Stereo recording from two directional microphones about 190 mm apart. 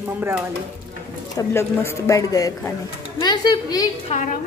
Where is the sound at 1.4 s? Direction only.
15° left (ahead or behind).